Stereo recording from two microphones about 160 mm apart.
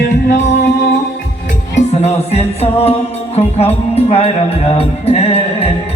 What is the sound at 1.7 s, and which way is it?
Music, 40° left (ahead or behind).